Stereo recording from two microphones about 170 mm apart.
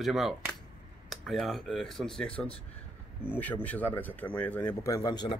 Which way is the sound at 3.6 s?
10° left (ahead or behind).